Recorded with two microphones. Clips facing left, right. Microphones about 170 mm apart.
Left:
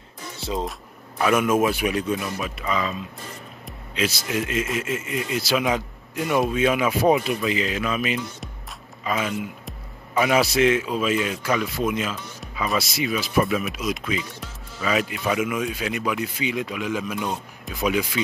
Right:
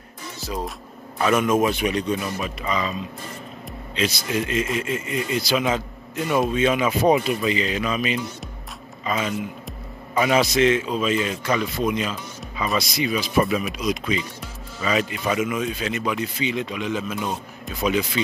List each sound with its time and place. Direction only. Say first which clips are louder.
0.4 s speech: left 2 dB; 25° left (ahead or behind)
0.7 s a man's voice: even; 5° left (ahead or behind)